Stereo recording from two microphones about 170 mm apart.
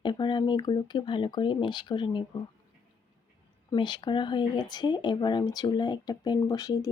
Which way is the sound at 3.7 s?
25° left (ahead or behind).